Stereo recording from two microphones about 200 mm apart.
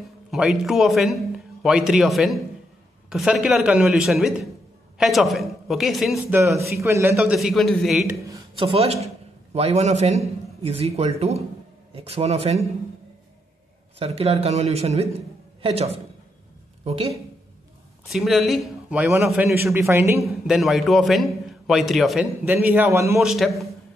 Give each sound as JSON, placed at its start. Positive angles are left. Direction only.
{"t": 0.3, "sound": "a man's voice", "side_deg": 0}
{"t": 6.8, "sound": "a man's voice", "side_deg": -15}
{"t": 8.1, "sound": "a sound", "side_deg": -15}
{"t": 8.6, "sound": "a man's voice", "side_deg": -30}
{"t": 13.9, "sound": "a man's voice", "side_deg": -30}
{"t": 18.0, "sound": "a man's voice", "side_deg": 0}
{"t": 20.2, "sound": "a man's voice", "side_deg": 0}
{"t": 23.2, "sound": "a man's voice", "side_deg": 0}